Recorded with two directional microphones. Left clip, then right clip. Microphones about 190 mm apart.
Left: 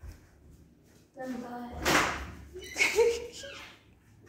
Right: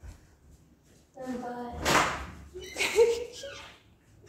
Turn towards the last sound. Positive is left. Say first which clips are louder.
# right 2 dB
turn(degrees=-5)  # may be behind; listen again after turning